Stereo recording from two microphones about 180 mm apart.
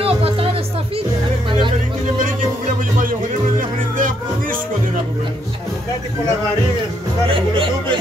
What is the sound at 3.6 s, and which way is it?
Music, 50° right (ahead or behind).